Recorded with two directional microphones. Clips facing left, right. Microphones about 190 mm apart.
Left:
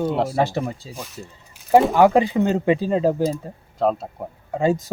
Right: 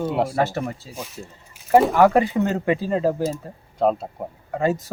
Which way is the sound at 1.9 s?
15° left (ahead or behind).